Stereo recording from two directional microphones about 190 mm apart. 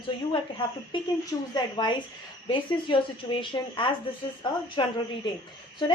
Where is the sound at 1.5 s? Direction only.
20° left (ahead or behind).